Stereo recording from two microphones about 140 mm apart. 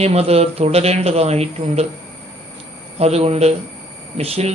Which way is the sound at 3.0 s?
50° right (ahead or behind).